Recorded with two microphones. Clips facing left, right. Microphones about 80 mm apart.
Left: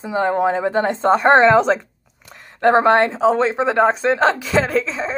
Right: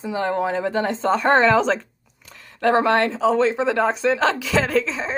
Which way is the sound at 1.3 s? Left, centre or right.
Left.